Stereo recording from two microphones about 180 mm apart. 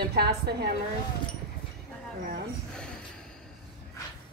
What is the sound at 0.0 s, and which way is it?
Speech, 65° right (ahead or behind).